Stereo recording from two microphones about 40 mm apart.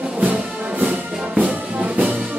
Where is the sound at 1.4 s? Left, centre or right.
Right.